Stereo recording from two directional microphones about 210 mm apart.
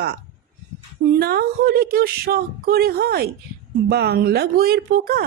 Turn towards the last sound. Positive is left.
turn(degrees=-45)  # may be behind; listen again after turning